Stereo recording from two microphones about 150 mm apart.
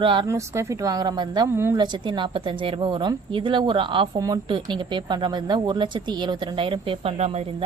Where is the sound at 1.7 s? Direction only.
30° right (ahead or behind).